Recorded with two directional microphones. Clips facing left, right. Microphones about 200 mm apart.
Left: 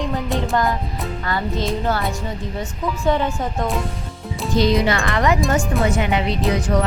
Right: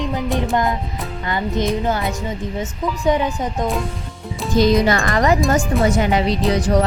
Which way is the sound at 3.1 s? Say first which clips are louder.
Right 2 dB; 15° right (ahead or behind).